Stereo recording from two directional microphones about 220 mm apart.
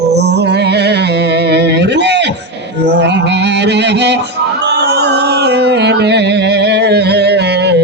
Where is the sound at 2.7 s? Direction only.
50° right (ahead or behind).